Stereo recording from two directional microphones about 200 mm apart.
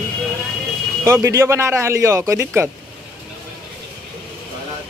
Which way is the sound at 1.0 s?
15° right (ahead or behind).